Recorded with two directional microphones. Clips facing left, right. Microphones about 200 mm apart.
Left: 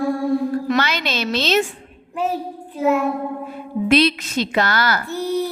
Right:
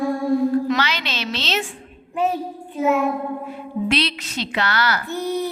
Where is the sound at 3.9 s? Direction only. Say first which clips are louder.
Left 8 dB; 45° left (ahead or behind).